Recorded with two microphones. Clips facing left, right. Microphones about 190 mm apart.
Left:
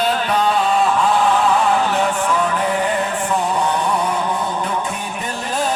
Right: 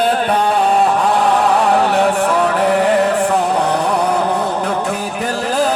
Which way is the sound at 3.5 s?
65° right (ahead or behind).